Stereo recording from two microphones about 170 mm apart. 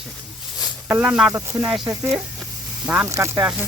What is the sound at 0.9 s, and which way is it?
Speech, 10° right (ahead or behind).